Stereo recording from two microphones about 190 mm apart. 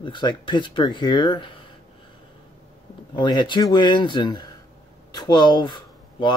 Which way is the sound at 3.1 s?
25° left (ahead or behind).